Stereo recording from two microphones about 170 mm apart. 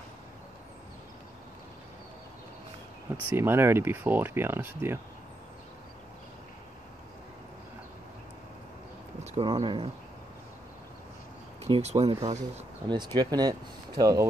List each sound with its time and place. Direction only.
3.3 s speech: 15° right (ahead or behind)
9.2 s speech: 35° right (ahead or behind)
11.6 s speech: 35° right (ahead or behind)
12.8 s speech: 25° right (ahead or behind)